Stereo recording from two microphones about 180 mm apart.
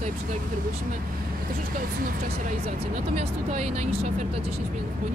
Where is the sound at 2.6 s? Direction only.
40° right (ahead or behind).